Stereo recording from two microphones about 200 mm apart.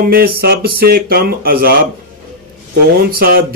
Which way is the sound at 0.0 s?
50° right (ahead or behind).